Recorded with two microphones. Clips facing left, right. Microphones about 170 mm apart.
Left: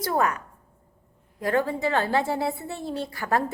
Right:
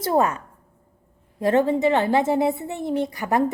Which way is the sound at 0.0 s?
25° right (ahead or behind).